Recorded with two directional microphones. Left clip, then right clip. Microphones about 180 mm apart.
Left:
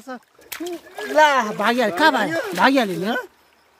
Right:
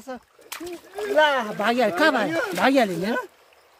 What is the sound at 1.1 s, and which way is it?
Speech, 15° left (ahead or behind).